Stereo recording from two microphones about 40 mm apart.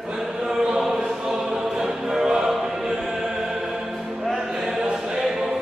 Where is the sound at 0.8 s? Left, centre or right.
Centre.